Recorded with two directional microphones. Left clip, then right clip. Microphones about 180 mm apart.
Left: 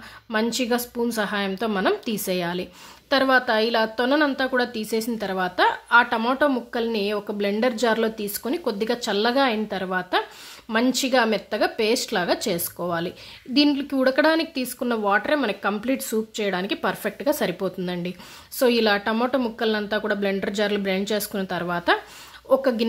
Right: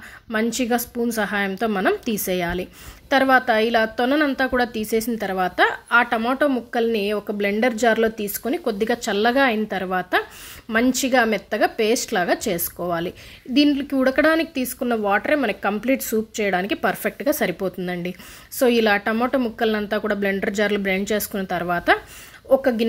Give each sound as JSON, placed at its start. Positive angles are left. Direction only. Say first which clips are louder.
{"t": 0.3, "sound": "a woman's voice", "louder": "right 1 dB", "side_deg": -10}